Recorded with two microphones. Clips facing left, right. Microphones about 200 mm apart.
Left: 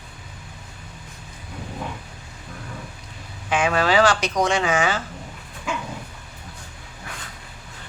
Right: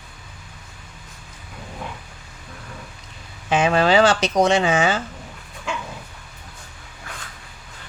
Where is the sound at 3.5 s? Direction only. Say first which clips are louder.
Right 3 dB; 25° right (ahead or behind).